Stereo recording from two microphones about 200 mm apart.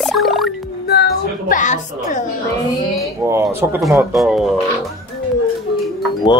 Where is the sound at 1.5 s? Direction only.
40° left (ahead or behind).